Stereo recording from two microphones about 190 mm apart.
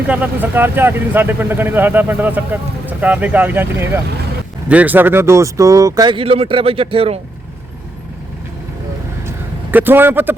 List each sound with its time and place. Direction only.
0.1 s speech: 10° right (ahead or behind); by 7.2 s 30° right (ahead or behind)
9.7 s speech: 10° right (ahead or behind)